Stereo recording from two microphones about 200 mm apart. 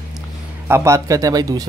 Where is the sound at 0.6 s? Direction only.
15° right (ahead or behind).